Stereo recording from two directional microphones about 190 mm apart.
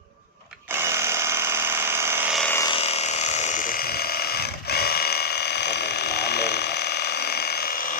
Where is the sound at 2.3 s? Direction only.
Centre (ahead or behind).